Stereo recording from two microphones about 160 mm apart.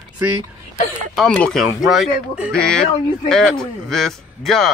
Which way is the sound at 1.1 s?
5° left (ahead or behind).